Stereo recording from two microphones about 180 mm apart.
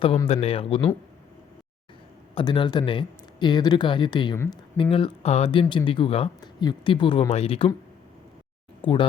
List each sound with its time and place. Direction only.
0.3 s speech: 35° left (ahead or behind)
2.3 s speech: 25° left (ahead or behind)
8.8 s speech: 30° left (ahead or behind)